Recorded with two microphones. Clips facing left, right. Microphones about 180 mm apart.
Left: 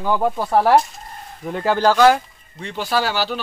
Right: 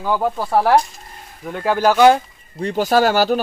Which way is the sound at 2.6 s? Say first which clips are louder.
Right 6 dB; 45° right (ahead or behind).